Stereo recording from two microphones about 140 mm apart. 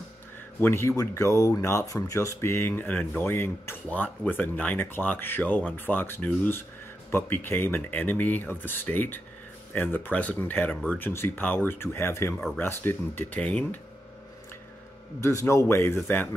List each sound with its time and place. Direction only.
0.6 s speech: 15° left (ahead or behind)
15.1 s a man's voice: 20° left (ahead or behind)